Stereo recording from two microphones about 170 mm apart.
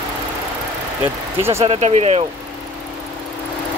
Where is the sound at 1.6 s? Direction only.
40° right (ahead or behind).